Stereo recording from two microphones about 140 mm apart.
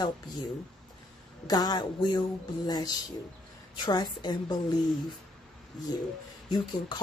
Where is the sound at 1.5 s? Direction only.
30° left (ahead or behind).